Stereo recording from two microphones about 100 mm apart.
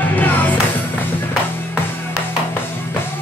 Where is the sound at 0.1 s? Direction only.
20° left (ahead or behind).